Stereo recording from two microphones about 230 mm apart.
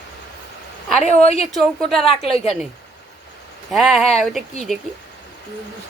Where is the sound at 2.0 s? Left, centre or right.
Left.